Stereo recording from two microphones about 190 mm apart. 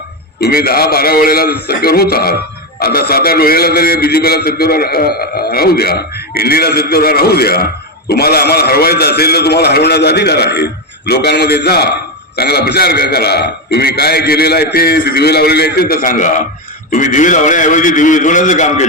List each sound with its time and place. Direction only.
0.3 s a man's voice: 55° left (ahead or behind); by 18.9 s 40° left (ahead or behind)